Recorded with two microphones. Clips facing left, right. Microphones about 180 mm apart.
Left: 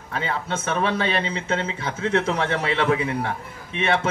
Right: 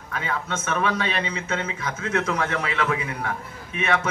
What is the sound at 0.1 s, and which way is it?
A man's voice, 30° left (ahead or behind).